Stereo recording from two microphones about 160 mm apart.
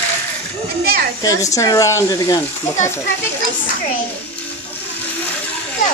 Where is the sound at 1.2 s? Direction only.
20° left (ahead or behind).